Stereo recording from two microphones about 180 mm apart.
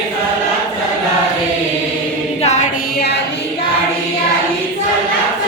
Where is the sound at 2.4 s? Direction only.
40° left (ahead or behind).